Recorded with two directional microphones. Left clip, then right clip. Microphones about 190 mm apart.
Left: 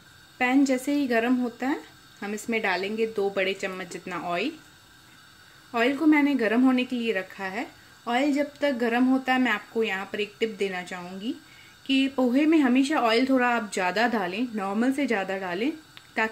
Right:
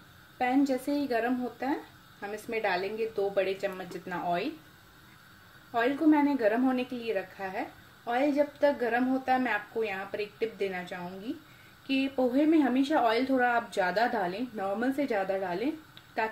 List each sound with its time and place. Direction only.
0.4 s a woman's voice: 45° left (ahead or behind)
5.7 s a woman's voice: 45° left (ahead or behind)